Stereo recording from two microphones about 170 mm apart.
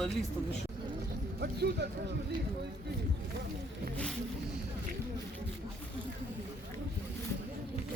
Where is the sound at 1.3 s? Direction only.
75° right (ahead or behind).